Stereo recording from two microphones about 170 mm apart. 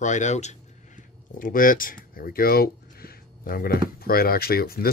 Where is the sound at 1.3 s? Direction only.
55° left (ahead or behind).